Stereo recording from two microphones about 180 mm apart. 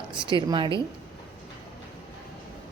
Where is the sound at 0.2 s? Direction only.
25° right (ahead or behind).